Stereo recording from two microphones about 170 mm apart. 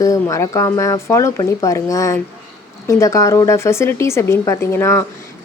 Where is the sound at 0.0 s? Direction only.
20° left (ahead or behind).